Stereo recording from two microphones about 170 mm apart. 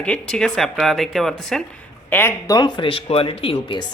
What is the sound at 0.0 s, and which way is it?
Speech, 5° left (ahead or behind).